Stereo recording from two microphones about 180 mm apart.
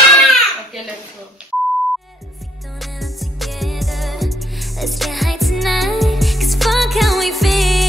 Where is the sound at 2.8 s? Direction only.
Centre (ahead or behind).